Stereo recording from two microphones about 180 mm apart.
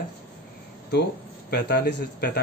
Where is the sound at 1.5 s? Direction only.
65° left (ahead or behind).